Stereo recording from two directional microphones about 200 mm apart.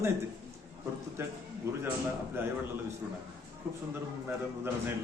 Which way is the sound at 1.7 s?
15° right (ahead or behind).